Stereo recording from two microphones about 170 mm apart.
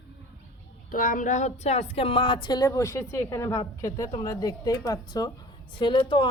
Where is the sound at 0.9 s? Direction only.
50° left (ahead or behind).